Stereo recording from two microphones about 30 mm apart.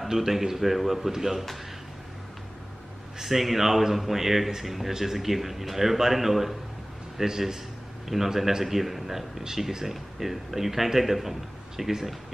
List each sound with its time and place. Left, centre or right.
0.1 s a man's voice: centre
3.2 s a man's voice: centre
7.2 s a man's voice: centre
8.1 s a man's voice: centre
9.7 s a man's voice: centre
10.1 s a man's voice: centre